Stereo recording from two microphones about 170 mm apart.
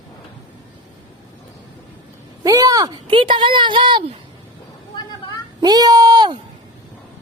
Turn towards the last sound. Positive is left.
turn(degrees=-25)  # may be behind; listen again after turning